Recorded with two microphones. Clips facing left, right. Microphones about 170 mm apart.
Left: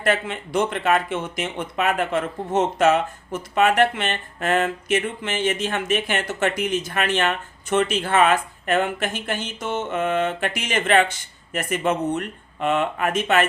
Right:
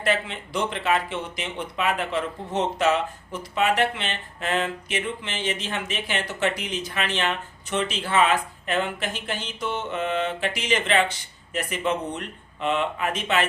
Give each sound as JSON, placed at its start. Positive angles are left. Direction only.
{"t": 0.0, "sound": "speech", "side_deg": 50}